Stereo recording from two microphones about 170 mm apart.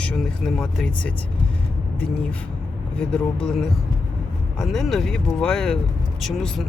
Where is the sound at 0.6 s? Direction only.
5° left (ahead or behind).